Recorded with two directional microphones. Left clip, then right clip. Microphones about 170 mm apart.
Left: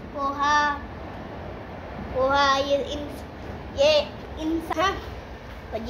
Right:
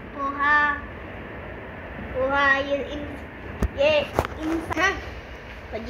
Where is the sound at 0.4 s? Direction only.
15° left (ahead or behind).